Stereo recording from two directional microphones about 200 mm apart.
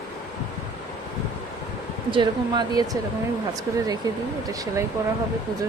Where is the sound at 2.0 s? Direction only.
25° right (ahead or behind).